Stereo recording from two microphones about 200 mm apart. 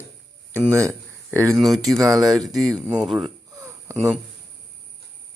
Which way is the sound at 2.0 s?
15° right (ahead or behind).